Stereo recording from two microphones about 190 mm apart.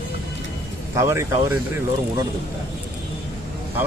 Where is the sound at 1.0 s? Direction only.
15° right (ahead or behind).